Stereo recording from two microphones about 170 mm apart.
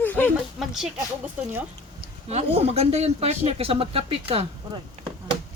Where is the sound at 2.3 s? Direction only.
40° right (ahead or behind).